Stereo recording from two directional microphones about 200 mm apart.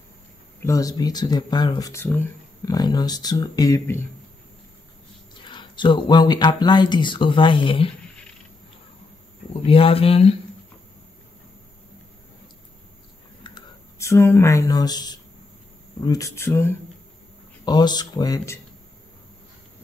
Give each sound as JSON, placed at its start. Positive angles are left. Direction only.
{"t": 0.6, "sound": "speech", "side_deg": 15}
{"t": 5.3, "sound": "speech", "side_deg": 25}
{"t": 9.5, "sound": "speech", "side_deg": 30}
{"t": 13.4, "sound": "a sound", "side_deg": 20}
{"t": 16.0, "sound": "speech", "side_deg": 15}